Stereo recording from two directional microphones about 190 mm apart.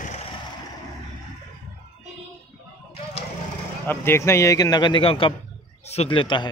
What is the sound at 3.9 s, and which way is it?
A man's voice, 15° left (ahead or behind).